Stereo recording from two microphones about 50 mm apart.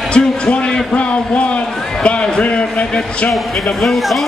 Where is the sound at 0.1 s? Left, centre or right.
Left.